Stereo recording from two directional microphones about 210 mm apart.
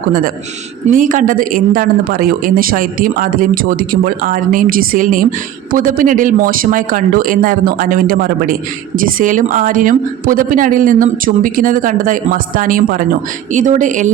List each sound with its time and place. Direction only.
0.9 s speech: 40° right (ahead or behind)